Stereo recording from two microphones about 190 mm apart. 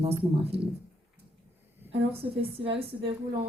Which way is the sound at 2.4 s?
30° right (ahead or behind).